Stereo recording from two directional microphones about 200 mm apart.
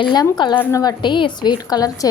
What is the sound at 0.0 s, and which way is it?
A woman's voice, 20° left (ahead or behind).